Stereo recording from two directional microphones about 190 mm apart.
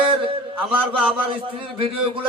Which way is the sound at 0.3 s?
30° right (ahead or behind).